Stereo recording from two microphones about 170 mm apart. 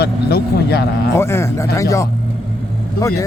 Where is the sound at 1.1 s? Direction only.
15° left (ahead or behind).